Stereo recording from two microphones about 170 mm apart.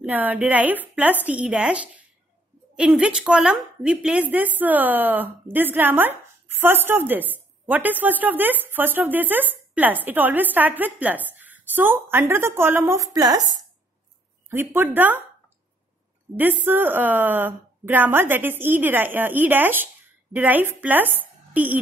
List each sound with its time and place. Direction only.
0.0 s a woman's voice: 10° right (ahead or behind)
16.3 s a woman's voice: 10° right (ahead or behind)